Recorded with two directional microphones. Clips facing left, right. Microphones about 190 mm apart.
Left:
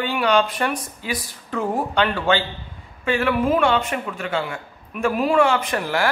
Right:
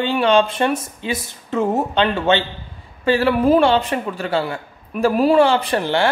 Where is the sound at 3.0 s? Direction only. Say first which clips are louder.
Right 4 dB; 35° right (ahead or behind).